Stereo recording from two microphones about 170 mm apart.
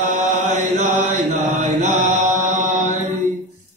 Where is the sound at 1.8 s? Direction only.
45° right (ahead or behind).